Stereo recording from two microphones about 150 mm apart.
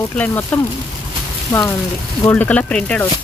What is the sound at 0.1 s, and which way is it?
Speech, 10° left (ahead or behind).